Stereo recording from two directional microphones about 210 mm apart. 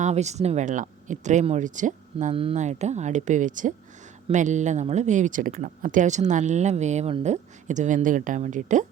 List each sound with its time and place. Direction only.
0.0 s speech: 30° right (ahead or behind)